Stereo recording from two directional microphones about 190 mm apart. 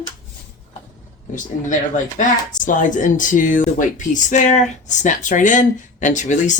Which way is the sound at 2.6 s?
40° left (ahead or behind).